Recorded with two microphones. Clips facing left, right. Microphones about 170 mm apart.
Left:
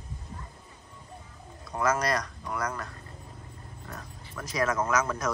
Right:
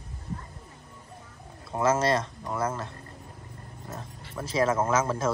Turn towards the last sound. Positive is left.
turn(degrees=-25)  # may be behind; listen again after turning